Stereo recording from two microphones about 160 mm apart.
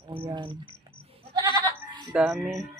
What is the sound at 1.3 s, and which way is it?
Goat, 25° right (ahead or behind).